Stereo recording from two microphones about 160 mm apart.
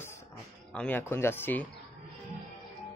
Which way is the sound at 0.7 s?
10° left (ahead or behind).